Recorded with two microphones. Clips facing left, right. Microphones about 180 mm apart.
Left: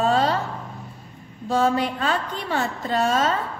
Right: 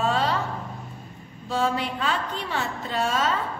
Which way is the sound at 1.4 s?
45° left (ahead or behind).